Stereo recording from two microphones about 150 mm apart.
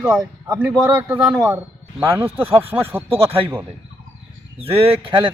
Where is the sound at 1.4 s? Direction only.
15° right (ahead or behind).